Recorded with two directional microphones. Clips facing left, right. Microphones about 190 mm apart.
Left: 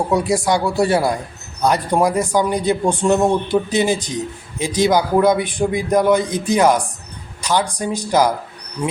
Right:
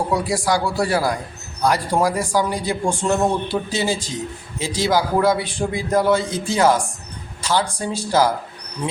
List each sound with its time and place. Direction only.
0.1 s a man's voice: 20° left (ahead or behind)